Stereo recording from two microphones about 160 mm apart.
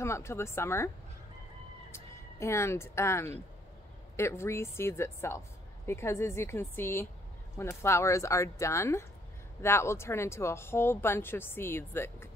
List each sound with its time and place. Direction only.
0.0 s speech: 15° left (ahead or behind)
1.9 s fowl: 15° left (ahead or behind)
4.2 s speech: 15° left (ahead or behind)